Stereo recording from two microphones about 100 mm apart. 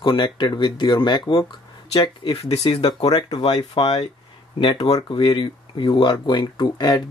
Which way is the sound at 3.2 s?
55° left (ahead or behind).